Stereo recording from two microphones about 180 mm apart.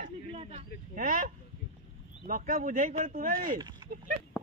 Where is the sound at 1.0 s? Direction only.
50° right (ahead or behind).